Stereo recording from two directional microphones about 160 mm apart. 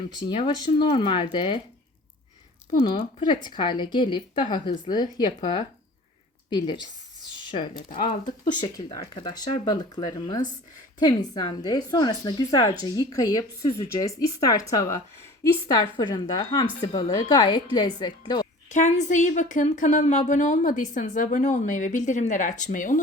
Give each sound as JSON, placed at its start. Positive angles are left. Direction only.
{"t": 0.2, "sound": "speech", "side_deg": 30}
{"t": 2.8, "sound": "a woman's voice", "side_deg": 30}
{"t": 18.7, "sound": "speech", "side_deg": 50}